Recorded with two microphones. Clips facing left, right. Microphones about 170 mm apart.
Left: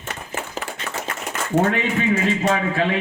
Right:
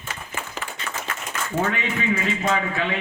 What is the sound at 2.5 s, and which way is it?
Speech, 35° left (ahead or behind).